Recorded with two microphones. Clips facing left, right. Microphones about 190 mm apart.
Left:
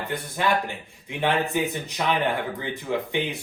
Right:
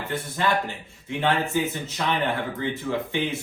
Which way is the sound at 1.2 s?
15° left (ahead or behind).